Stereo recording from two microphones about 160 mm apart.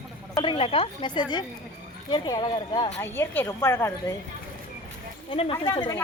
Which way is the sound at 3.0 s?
15° left (ahead or behind).